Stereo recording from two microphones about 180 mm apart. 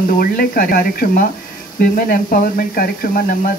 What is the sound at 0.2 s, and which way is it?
Speech, 55° left (ahead or behind).